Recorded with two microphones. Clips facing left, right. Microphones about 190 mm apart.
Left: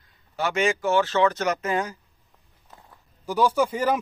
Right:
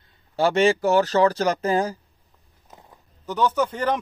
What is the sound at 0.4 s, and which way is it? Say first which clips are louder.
Speech: right 5 dB; 35° right (ahead or behind).